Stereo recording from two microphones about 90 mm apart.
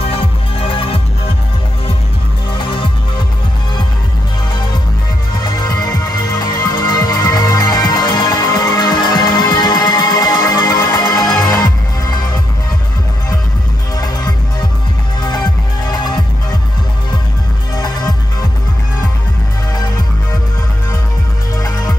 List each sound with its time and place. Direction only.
0.0 s music: 90° left
2.5 s music: 65° left (ahead or behind)
5.4 s music: 50° left (ahead or behind)
13.9 s music: 45° left (ahead or behind)
17.7 s music: 50° left (ahead or behind)
21.5 s music: 40° left (ahead or behind)